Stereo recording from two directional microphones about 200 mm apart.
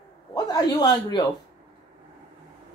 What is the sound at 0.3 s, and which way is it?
Speech, 20° left (ahead or behind).